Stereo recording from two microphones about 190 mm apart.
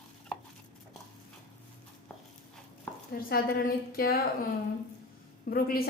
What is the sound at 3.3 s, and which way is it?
Speech, 50° left (ahead or behind).